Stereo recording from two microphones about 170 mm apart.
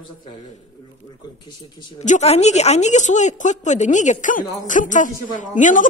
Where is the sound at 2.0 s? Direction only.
40° left (ahead or behind).